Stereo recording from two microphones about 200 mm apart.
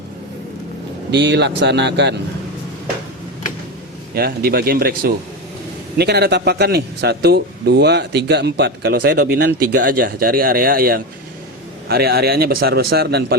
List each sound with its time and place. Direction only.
1.1 s speech: 60° right (ahead or behind)
4.1 s a man's voice: 50° right (ahead or behind)